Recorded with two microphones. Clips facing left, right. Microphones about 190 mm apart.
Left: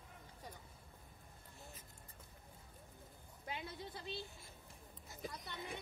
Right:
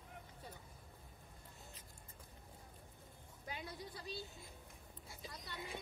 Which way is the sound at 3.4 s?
25° left (ahead or behind).